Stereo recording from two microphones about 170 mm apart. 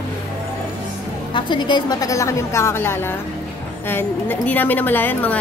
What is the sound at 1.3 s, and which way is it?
A woman's voice, 25° left (ahead or behind).